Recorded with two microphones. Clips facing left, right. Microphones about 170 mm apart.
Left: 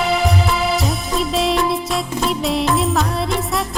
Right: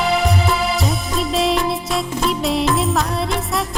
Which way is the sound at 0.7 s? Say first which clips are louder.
Left 1 dB; centre (ahead or behind).